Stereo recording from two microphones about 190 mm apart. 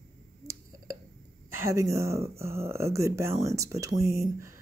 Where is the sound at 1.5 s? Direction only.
15° right (ahead or behind).